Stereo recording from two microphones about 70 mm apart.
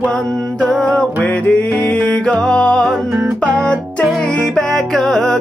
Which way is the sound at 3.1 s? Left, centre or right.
Centre.